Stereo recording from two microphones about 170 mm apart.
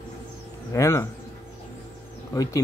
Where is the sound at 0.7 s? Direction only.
15° left (ahead or behind).